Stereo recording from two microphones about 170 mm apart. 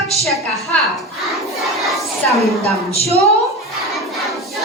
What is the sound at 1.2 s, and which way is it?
Crowd, centre (ahead or behind).